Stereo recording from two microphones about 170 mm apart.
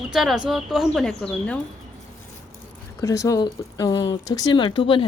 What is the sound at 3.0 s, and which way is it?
Speech, 20° left (ahead or behind).